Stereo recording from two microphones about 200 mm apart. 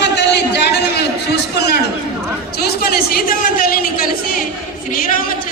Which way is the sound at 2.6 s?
50° left (ahead or behind).